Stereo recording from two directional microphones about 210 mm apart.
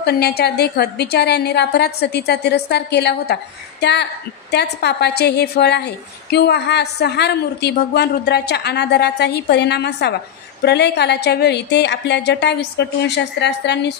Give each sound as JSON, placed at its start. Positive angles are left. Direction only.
{"t": 0.0, "sound": "a woman's voice", "side_deg": 50}